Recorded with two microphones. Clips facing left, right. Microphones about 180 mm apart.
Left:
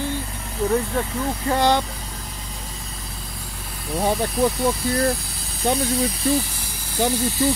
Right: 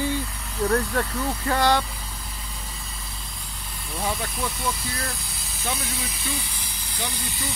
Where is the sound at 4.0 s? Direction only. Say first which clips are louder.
Left 8 dB; 35° left (ahead or behind).